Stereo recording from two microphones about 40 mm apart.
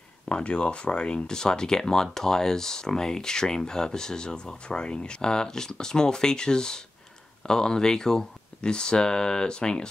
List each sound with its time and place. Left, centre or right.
0.3 s speech: left